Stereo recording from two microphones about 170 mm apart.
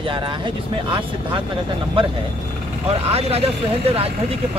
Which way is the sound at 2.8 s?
35° right (ahead or behind).